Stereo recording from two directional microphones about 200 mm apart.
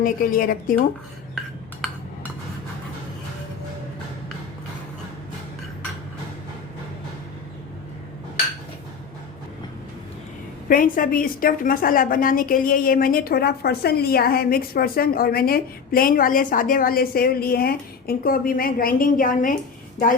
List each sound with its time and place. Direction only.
0.0 s a woman's voice: 45° left (ahead or behind)
10.7 s a woman's voice: 45° left (ahead or behind)